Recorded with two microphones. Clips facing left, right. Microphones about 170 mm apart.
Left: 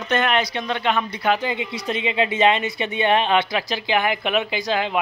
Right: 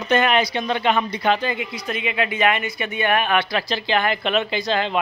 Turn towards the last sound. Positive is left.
turn(degrees=10)  # may be behind; listen again after turning